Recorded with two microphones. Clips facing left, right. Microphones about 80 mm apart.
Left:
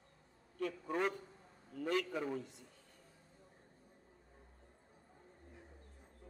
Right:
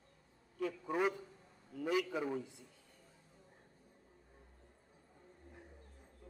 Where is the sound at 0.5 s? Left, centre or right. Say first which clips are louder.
Right 1 dB; centre.